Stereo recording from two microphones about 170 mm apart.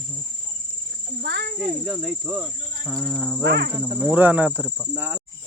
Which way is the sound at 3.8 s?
25° right (ahead or behind).